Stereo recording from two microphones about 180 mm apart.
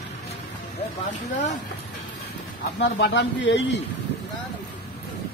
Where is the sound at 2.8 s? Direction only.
75° left (ahead or behind).